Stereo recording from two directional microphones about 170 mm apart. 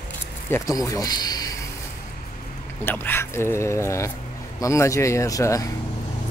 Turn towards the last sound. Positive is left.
turn(degrees=20)  # may be behind; listen again after turning